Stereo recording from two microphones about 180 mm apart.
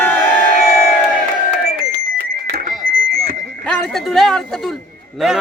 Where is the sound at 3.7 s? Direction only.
Centre (ahead or behind).